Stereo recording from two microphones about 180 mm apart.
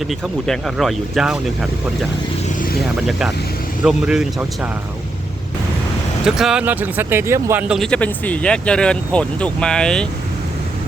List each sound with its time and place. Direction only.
0.1 s speech: centre (ahead or behind)
3.1 s speech: centre (ahead or behind)
6.2 s speech: 5° right (ahead or behind)
7.7 s speech: 5° left (ahead or behind)